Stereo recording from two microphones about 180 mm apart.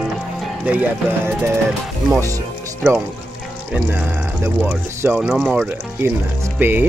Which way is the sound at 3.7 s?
10° right (ahead or behind).